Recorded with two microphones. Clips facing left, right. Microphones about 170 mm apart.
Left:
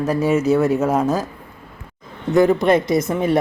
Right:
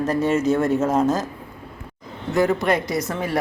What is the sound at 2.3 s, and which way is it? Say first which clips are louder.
A man's voice: left 5 dB; 20° left (ahead or behind).